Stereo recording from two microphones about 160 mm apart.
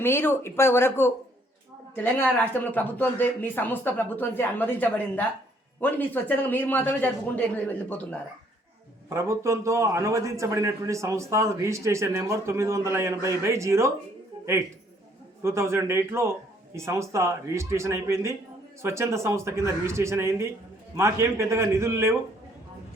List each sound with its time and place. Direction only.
0.0 s speech: 15° left (ahead or behind)
9.0 s a man's voice: 15° right (ahead or behind)
15.4 s a man's voice: 15° right (ahead or behind)